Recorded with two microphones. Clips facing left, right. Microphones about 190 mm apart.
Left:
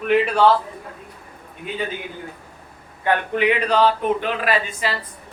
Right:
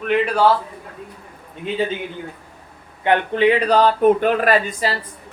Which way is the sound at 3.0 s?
25° right (ahead or behind).